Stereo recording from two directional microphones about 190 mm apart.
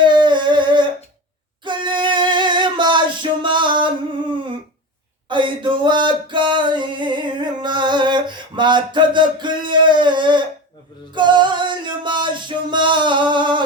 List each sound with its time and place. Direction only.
0.0 s humming: 25° right (ahead or behind)
1.6 s music: 25° right (ahead or behind)
5.3 s a sound: 25° right (ahead or behind)
11.1 s music: 25° right (ahead or behind)